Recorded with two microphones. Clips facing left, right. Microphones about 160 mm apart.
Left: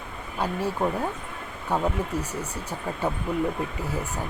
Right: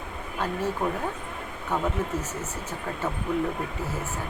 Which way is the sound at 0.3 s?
10° left (ahead or behind).